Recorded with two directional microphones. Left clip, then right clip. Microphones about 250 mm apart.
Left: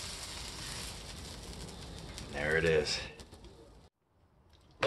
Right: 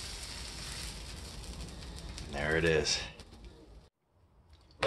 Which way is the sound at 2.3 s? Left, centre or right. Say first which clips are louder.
Even; right.